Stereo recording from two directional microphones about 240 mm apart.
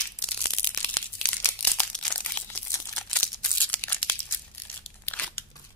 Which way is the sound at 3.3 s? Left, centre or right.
Centre.